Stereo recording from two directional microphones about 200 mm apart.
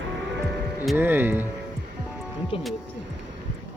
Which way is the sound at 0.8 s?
10° right (ahead or behind).